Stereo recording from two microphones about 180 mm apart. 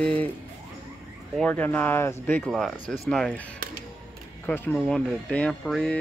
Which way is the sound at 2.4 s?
Centre (ahead or behind).